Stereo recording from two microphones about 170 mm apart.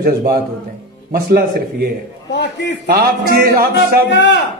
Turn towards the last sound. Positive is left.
turn(degrees=90)